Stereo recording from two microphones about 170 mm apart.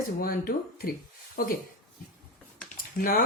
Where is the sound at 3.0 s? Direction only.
55° left (ahead or behind).